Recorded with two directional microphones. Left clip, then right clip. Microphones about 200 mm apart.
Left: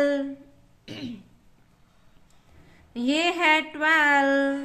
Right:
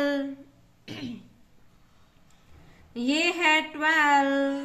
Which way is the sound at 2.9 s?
15° left (ahead or behind).